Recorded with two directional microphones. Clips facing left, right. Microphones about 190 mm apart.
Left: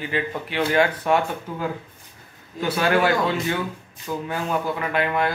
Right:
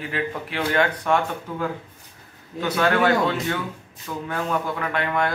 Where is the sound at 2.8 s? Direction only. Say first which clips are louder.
Right 1 dB; 10° left (ahead or behind).